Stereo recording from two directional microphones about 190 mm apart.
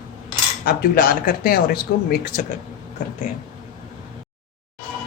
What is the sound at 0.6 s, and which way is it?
Speech, 50° left (ahead or behind).